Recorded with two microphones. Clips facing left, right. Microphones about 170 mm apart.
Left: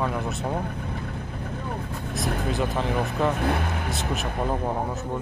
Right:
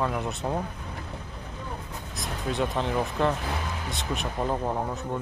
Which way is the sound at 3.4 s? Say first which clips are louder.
Left 7 dB; 60° left (ahead or behind).